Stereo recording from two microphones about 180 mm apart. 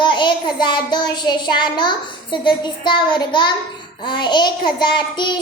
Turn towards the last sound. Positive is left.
turn(degrees=25)  # may be behind; listen again after turning